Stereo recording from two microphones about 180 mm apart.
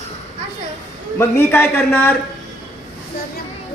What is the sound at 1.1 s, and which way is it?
A man's voice, 15° left (ahead or behind).